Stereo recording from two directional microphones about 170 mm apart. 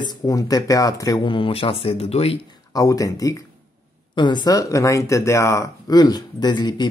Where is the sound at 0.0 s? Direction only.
25° left (ahead or behind).